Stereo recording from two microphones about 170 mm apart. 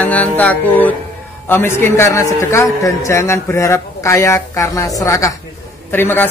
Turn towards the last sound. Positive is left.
turn(degrees=10)  # may be behind; listen again after turning